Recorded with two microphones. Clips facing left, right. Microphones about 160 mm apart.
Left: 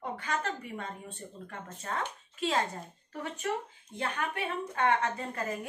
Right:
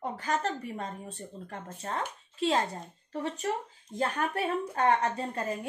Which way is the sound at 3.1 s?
35° right (ahead or behind).